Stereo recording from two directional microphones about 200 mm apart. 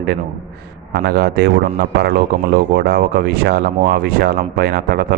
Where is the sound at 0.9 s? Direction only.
55° right (ahead or behind).